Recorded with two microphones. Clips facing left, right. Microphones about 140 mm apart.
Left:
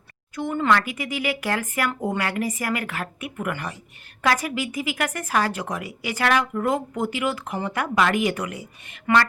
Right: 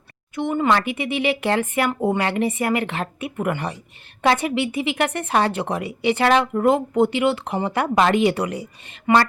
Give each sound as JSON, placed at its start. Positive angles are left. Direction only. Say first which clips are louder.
{"t": 0.3, "sound": "speech", "louder": "right 2 dB", "side_deg": -20}